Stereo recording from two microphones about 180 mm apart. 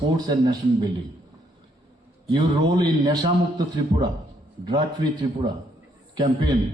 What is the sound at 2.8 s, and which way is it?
A man's voice, 20° right (ahead or behind).